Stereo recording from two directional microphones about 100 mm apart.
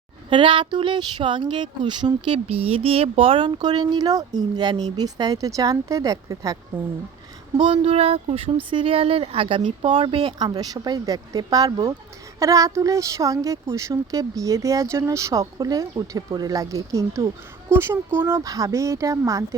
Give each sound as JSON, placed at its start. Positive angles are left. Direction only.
{"t": 0.3, "sound": "speech", "side_deg": -60}
{"t": 7.5, "sound": "speech", "side_deg": -60}
{"t": 7.9, "sound": "speech", "side_deg": -90}
{"t": 8.7, "sound": "speech", "side_deg": -65}